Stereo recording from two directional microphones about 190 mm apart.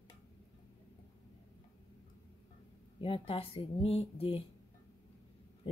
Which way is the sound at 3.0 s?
30° left (ahead or behind).